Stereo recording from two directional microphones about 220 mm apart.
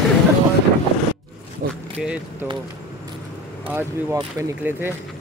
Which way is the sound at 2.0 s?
5° right (ahead or behind).